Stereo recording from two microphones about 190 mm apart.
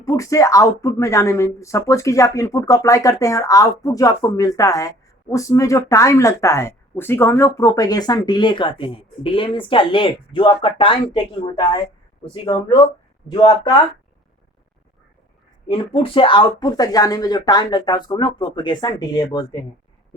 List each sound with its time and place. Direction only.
0.0 s speech: 15° left (ahead or behind)
15.6 s speech: 30° left (ahead or behind)